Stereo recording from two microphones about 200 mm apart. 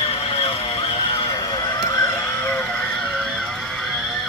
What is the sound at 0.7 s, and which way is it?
Music, 30° left (ahead or behind).